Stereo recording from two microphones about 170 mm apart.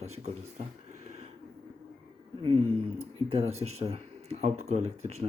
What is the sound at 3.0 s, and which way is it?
A man's voice, 35° right (ahead or behind).